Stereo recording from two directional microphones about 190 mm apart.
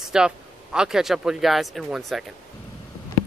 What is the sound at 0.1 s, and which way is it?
Speech, 5° right (ahead or behind).